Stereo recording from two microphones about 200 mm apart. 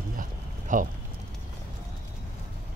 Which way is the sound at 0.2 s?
40° right (ahead or behind).